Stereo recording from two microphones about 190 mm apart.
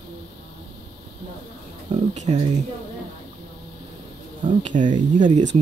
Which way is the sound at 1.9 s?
35° right (ahead or behind).